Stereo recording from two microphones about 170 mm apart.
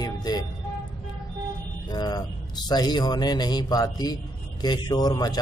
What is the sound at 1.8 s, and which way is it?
Speech, 25° left (ahead or behind).